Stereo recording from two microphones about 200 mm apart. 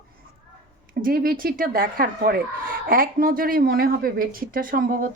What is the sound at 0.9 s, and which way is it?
Speech, 45° right (ahead or behind).